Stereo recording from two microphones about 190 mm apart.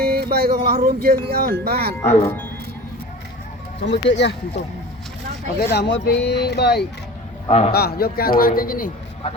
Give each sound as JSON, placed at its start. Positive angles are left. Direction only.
{"t": 0.0, "sound": "music", "side_deg": -55}
{"t": 0.9, "sound": "speech", "side_deg": -55}
{"t": 2.0, "sound": "speech", "side_deg": 35}
{"t": 3.8, "sound": "speech", "side_deg": 65}
{"t": 5.7, "sound": "speech", "side_deg": 65}
{"t": 7.4, "sound": "a man's voice", "side_deg": 35}
{"t": 7.7, "sound": "speech", "side_deg": 55}